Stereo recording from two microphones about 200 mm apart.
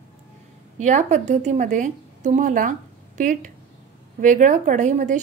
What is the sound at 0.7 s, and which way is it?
A woman's voice, 35° right (ahead or behind).